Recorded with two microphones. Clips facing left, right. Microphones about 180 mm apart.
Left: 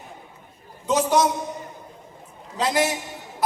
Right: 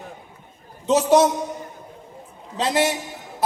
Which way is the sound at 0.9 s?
25° right (ahead or behind).